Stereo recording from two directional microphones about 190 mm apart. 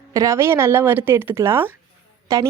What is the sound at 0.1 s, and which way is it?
Speech, 15° right (ahead or behind).